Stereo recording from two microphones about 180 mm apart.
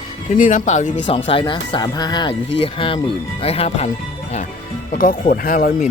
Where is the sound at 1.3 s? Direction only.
25° left (ahead or behind).